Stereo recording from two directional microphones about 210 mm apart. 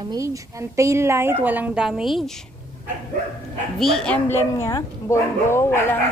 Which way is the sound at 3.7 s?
Centre (ahead or behind).